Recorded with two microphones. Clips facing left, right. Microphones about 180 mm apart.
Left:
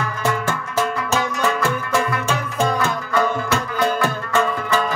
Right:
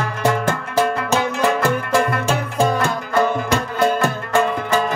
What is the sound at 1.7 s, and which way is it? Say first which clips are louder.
Music: right 3 dB; 50° right (ahead or behind).